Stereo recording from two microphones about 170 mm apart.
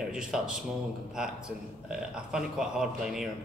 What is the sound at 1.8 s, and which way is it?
Speech, 5° right (ahead or behind).